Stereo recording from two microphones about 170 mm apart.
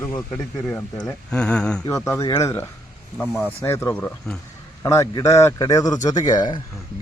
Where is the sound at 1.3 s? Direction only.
5° left (ahead or behind).